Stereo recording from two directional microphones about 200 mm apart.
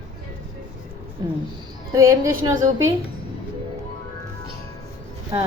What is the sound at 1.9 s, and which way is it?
Speech, 15° right (ahead or behind).